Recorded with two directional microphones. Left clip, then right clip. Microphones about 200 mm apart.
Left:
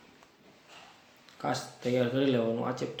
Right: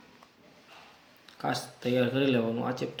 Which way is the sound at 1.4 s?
15° right (ahead or behind).